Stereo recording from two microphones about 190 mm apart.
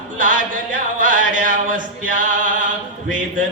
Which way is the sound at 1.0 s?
45° right (ahead or behind).